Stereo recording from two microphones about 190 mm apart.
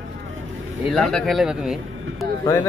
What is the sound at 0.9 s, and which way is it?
Speech, centre (ahead or behind).